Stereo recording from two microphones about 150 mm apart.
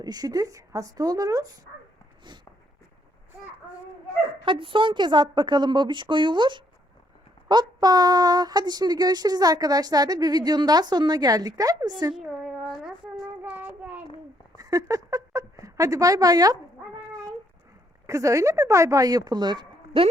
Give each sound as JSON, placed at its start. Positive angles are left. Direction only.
{"t": 0.0, "sound": "speech", "side_deg": -25}
{"t": 4.4, "sound": "a woman's voice", "side_deg": -35}
{"t": 12.1, "sound": "a sound", "side_deg": 0}
{"t": 13.4, "sound": "child singing", "side_deg": -10}
{"t": 14.5, "sound": "a sound", "side_deg": -25}
{"t": 18.0, "sound": "speech", "side_deg": -20}